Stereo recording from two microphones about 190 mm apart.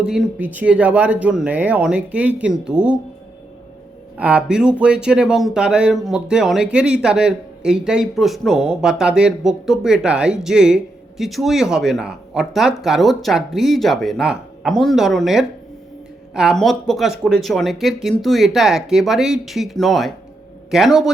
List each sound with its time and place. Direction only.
0.0 s speech: 5° right (ahead or behind)
4.2 s speech: 5° right (ahead or behind)